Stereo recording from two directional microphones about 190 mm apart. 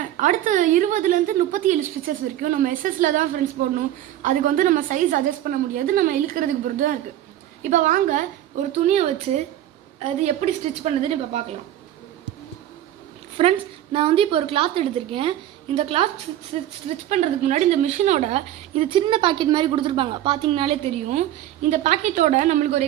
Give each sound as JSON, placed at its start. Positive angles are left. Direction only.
{"t": 0.2, "sound": "a woman's voice", "side_deg": -40}
{"t": 13.4, "sound": "a woman's voice", "side_deg": -30}